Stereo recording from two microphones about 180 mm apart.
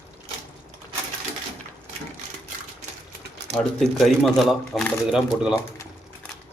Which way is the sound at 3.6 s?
5° left (ahead or behind).